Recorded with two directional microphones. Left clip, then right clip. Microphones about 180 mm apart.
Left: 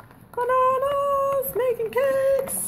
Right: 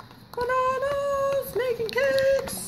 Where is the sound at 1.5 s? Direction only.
10° left (ahead or behind).